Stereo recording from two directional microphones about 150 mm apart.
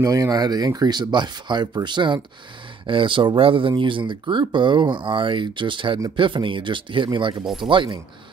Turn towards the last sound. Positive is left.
turn(degrees=-35)  # may be behind; listen again after turning